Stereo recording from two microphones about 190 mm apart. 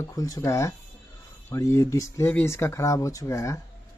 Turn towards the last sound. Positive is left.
turn(degrees=15)  # may be behind; listen again after turning